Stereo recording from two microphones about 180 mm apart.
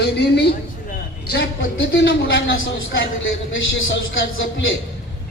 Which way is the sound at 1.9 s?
75° left (ahead or behind).